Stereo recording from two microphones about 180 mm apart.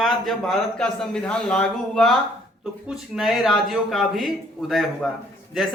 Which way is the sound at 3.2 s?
Centre (ahead or behind).